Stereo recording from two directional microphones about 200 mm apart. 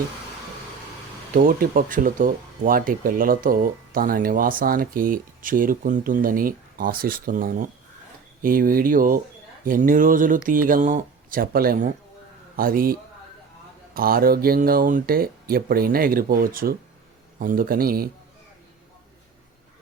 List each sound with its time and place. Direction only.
1.4 s speech: 45° right (ahead or behind)